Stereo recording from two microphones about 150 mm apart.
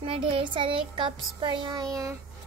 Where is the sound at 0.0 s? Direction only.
35° right (ahead or behind).